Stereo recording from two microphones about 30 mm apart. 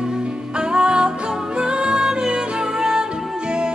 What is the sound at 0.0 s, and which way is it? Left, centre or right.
Music, right.